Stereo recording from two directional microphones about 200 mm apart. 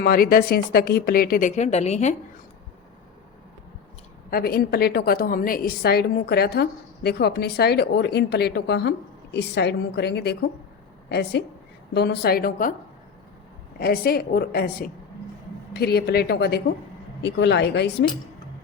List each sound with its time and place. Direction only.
0.0 s a woman's voice: 45° left (ahead or behind)
4.3 s a woman's voice: 50° left (ahead or behind)
13.7 s a woman's voice: 50° left (ahead or behind)